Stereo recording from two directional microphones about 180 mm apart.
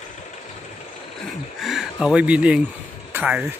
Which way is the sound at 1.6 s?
Centre (ahead or behind).